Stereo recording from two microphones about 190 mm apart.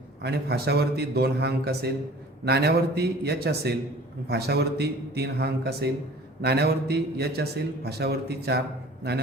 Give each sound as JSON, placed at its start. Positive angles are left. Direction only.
{"t": 0.2, "sound": "a man's voice", "side_deg": -60}